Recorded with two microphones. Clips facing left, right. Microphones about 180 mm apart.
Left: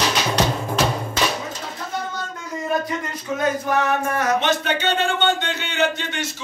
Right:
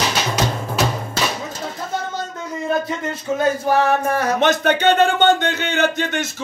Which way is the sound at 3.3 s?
30° right (ahead or behind).